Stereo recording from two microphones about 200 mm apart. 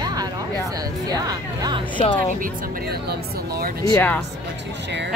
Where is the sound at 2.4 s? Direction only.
50° right (ahead or behind).